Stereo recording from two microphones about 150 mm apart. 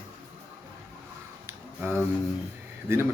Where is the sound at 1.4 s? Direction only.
15° right (ahead or behind).